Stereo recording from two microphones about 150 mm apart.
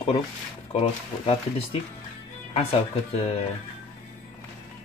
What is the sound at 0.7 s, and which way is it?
Speech, 40° left (ahead or behind).